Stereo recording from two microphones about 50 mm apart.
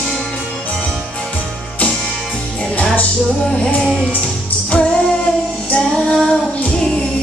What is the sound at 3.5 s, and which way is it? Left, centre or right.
Music, centre.